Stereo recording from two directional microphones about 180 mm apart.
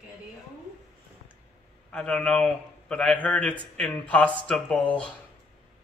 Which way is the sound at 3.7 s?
5° left (ahead or behind).